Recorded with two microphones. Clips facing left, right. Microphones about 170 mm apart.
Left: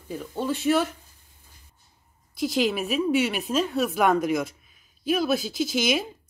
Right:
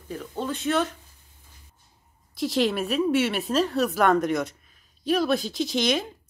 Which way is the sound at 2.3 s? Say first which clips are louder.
Even; centre (ahead or behind).